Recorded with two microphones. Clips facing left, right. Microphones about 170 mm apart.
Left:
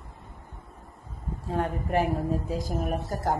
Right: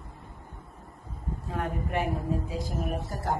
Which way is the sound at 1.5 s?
30° left (ahead or behind).